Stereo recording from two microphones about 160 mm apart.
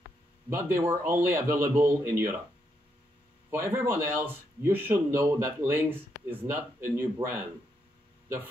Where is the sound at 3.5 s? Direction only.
15° right (ahead or behind).